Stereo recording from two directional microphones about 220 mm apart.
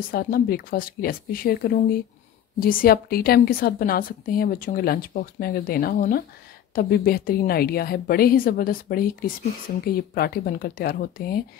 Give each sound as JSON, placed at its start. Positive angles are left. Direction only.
{"t": 0.1, "sound": "a woman's voice", "side_deg": 40}